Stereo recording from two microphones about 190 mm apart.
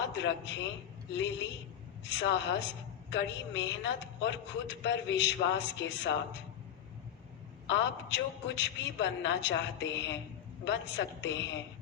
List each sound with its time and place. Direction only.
0.2 s a woman's voice: 70° left (ahead or behind)
2.0 s a woman's voice: 70° left (ahead or behind)
7.7 s a woman's voice: 70° left (ahead or behind)